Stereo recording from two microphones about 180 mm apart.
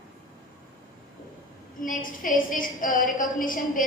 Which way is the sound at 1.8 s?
50° left (ahead or behind).